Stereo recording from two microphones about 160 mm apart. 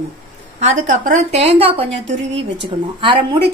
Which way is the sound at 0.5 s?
50° right (ahead or behind).